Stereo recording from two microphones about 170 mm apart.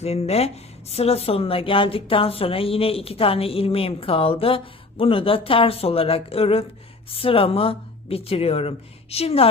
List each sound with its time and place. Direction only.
0.0 s speech: 40° left (ahead or behind)